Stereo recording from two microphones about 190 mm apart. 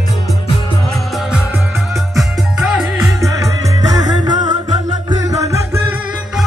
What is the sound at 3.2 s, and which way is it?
Music, 15° right (ahead or behind).